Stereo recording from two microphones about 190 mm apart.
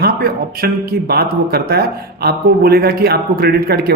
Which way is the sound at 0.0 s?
55° right (ahead or behind).